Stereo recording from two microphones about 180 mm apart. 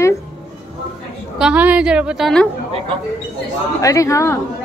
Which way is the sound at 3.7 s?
15° left (ahead or behind).